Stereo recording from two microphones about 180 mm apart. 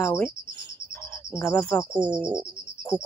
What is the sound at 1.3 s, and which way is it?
Speech, 5° left (ahead or behind).